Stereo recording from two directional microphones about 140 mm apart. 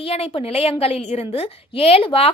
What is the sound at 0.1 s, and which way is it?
Speech, 45° left (ahead or behind).